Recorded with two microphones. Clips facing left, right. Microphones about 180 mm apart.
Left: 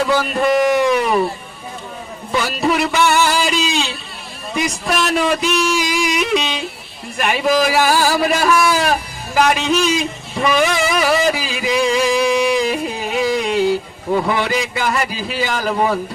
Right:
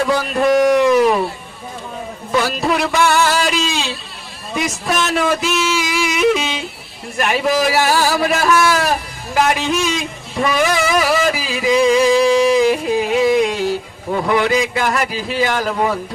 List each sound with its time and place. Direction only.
0.0 s speech: centre (ahead or behind)
2.3 s a man's voice: centre (ahead or behind)